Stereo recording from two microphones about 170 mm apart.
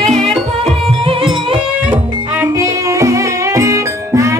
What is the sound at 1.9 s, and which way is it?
Music, 15° right (ahead or behind).